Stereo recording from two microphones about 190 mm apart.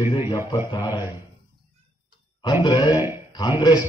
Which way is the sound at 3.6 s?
20° left (ahead or behind).